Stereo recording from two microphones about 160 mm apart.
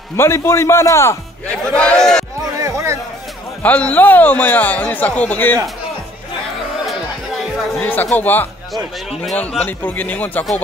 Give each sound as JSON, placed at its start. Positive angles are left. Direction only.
{"t": 0.2, "sound": "a man's voice", "side_deg": 15}
{"t": 2.5, "sound": "music", "side_deg": -20}
{"t": 3.6, "sound": "a man's voice", "side_deg": 10}
{"t": 7.7, "sound": "a man's voice", "side_deg": 10}